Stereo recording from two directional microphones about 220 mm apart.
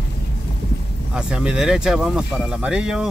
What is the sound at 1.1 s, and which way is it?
Speech, 5° right (ahead or behind).